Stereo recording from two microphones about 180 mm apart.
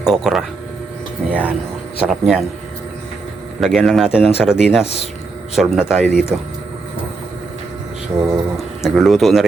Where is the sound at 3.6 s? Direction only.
Centre (ahead or behind).